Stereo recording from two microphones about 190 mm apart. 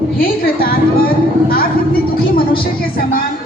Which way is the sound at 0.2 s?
50° left (ahead or behind).